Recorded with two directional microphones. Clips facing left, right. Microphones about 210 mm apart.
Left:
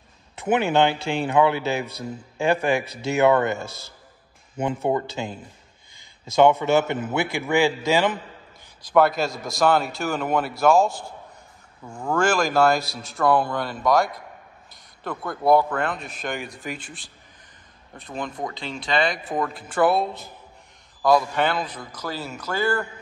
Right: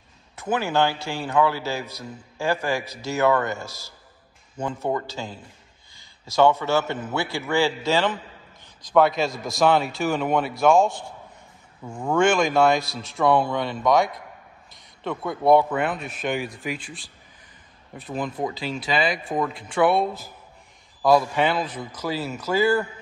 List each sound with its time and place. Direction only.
0.4 s speech: 20° left (ahead or behind)
2.8 s speech: 60° left (ahead or behind)
3.1 s speech: 20° left (ahead or behind)
3.6 s speech: 55° left (ahead or behind)
4.6 s a man's voice: 20° left (ahead or behind); by 11.1 s 5° left (ahead or behind)
12.1 s a man's voice: centre (ahead or behind)